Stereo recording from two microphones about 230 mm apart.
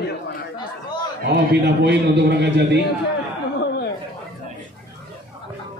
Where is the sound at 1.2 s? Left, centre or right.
Right.